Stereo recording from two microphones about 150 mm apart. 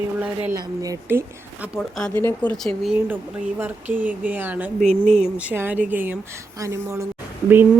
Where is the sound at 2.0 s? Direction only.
10° left (ahead or behind).